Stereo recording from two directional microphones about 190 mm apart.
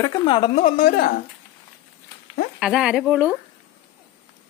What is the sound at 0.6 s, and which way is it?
Speech, 45° left (ahead or behind).